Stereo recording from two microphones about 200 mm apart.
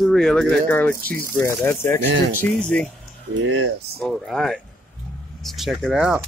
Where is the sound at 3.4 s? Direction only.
85° right.